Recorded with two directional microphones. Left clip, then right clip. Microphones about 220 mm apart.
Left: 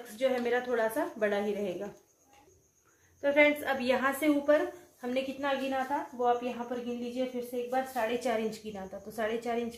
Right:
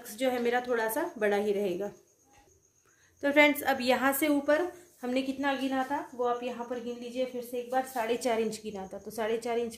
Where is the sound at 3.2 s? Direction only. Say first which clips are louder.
Right 1 dB; 55° right (ahead or behind); by 6.3 s 40° right (ahead or behind).